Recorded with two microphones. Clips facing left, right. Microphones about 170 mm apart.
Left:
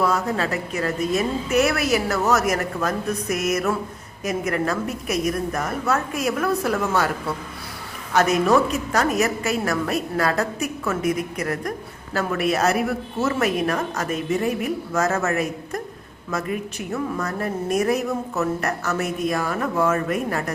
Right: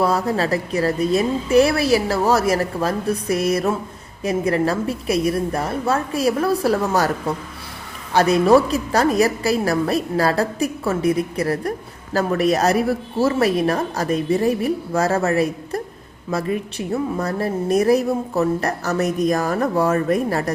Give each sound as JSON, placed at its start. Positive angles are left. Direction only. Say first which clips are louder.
{"t": 0.0, "sound": "a woman's voice", "louder": "right 3 dB", "side_deg": -35}